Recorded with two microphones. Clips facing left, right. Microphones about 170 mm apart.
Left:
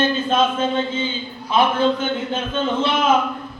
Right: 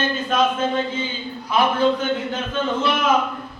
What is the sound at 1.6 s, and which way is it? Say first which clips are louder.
Speech: left 2 dB; 25° left (ahead or behind).